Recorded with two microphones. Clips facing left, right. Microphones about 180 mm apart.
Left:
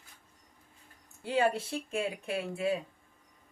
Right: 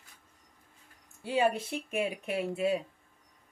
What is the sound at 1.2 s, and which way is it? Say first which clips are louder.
Speech: right 1 dB; 15° right (ahead or behind).